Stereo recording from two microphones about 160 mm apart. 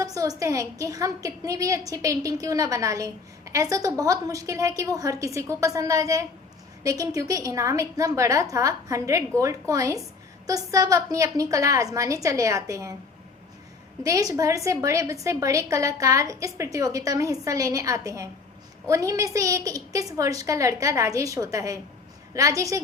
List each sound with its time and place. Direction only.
0.0 s a woman's voice: 20° right (ahead or behind)
14.0 s a woman's voice: 20° right (ahead or behind)